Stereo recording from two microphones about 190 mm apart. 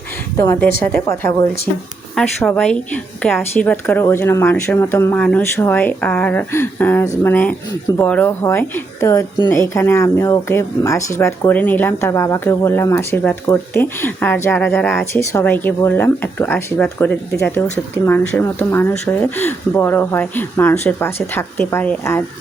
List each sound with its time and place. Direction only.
0.3 s speech: 15° left (ahead or behind)
1.0 s speech: 15° left (ahead or behind)
2.1 s speech: 5° left (ahead or behind)